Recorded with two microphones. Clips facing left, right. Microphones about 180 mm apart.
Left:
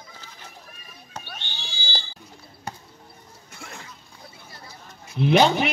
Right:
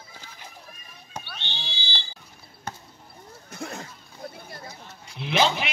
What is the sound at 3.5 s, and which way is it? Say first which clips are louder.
Neigh: right 7 dB; 40° right (ahead or behind).